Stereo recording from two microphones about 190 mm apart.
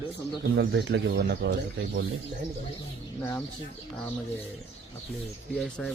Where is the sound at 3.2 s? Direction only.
10° left (ahead or behind).